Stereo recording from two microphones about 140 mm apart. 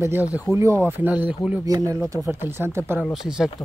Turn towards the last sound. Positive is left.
turn(degrees=-5)  # may be behind; listen again after turning